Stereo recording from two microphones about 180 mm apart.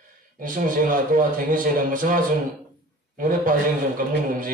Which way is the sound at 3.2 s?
50° right (ahead or behind).